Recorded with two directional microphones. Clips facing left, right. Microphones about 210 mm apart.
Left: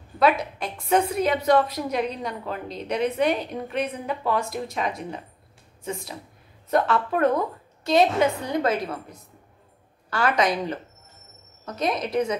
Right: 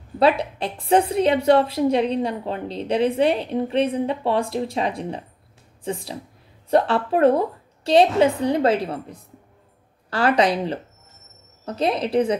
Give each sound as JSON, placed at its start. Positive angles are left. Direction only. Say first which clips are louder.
{"t": 0.2, "sound": "a woman's voice", "louder": "right 3 dB", "side_deg": -30}